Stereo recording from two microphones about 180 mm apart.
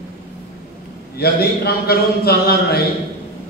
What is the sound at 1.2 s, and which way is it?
A man's voice, 60° left (ahead or behind).